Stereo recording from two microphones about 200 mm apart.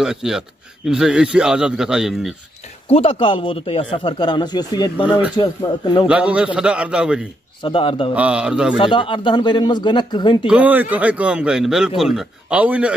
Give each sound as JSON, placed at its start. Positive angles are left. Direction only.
{"t": 0.0, "sound": "a man's voice", "side_deg": -5}
{"t": 2.9, "sound": "a man's voice", "side_deg": 30}
{"t": 6.0, "sound": "a man's voice", "side_deg": -5}
{"t": 7.6, "sound": "a man's voice", "side_deg": 25}
{"t": 8.1, "sound": "a man's voice", "side_deg": -5}
{"t": 8.7, "sound": "a man's voice", "side_deg": 25}
{"t": 10.4, "sound": "a man's voice", "side_deg": -5}